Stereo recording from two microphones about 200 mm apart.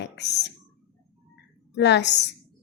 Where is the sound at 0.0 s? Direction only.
60° left (ahead or behind).